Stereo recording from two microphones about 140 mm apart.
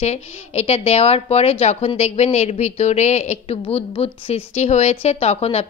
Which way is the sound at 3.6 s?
40° left (ahead or behind).